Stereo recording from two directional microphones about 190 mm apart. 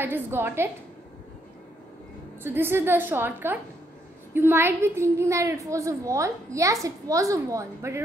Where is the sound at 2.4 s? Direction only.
10° right (ahead or behind).